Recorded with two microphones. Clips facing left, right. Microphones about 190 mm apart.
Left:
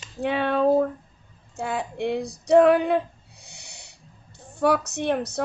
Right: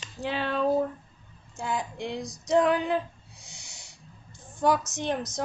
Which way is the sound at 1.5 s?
65° left (ahead or behind).